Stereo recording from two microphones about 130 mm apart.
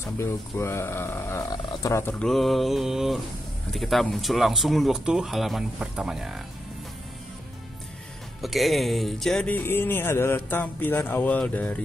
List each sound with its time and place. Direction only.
0.0 s speech: 20° left (ahead or behind)
1.5 s speech: 30° left (ahead or behind)
2.1 s speech: centre (ahead or behind)
8.4 s speech: centre (ahead or behind)